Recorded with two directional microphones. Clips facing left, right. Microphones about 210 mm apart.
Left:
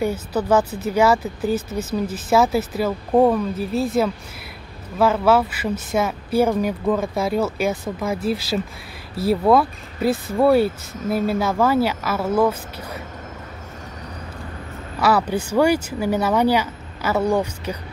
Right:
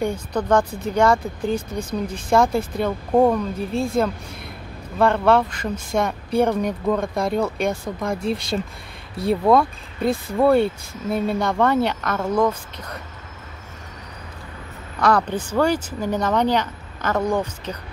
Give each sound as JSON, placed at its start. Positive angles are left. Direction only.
{"t": 0.0, "sound": "speech", "side_deg": 5}
{"t": 15.0, "sound": "speech", "side_deg": 5}